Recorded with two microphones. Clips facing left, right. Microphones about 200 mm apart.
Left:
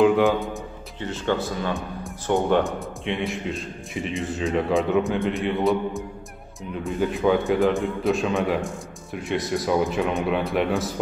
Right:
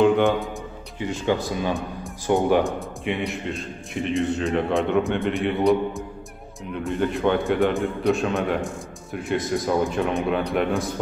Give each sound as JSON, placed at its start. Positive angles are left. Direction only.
{"t": 0.0, "sound": "a man's voice", "side_deg": 0}
{"t": 0.9, "sound": "a man's voice", "side_deg": -10}